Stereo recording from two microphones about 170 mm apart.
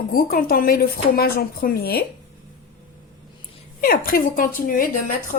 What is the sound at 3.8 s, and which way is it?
A woman's voice, 60° left (ahead or behind).